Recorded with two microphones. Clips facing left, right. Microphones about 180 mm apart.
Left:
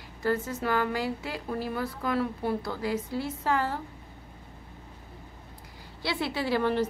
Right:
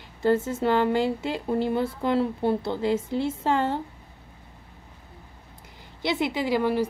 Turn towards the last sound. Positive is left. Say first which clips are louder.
# right 3 dB
turn(degrees=-10)  # may be behind; listen again after turning